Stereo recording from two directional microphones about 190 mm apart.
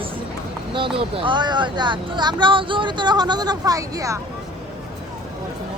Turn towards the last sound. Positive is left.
turn(degrees=-15)  # may be behind; listen again after turning